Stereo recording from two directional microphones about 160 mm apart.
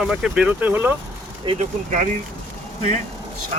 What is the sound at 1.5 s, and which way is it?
Speech, 50° right (ahead or behind).